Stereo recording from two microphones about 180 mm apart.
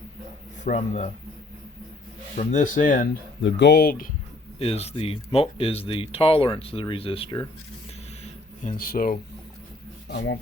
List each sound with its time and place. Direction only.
0.6 s speech: 45° left (ahead or behind)
2.3 s speech: 45° left (ahead or behind)
3.4 s speech: 70° left (ahead or behind); by 4.1 s 55° left (ahead or behind)
4.6 s speech: 35° left (ahead or behind)
8.2 s a sound: 50° left (ahead or behind)
10.1 s speech: 65° left (ahead or behind)